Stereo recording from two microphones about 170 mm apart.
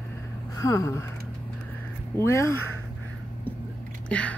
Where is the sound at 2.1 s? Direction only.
15° left (ahead or behind).